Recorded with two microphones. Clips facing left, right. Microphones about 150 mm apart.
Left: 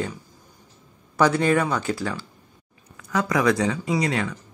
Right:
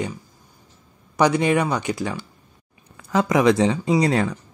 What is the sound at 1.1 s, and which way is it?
Speech, 15° right (ahead or behind).